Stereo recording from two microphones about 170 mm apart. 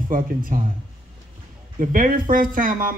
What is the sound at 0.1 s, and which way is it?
Speech, 55° right (ahead or behind).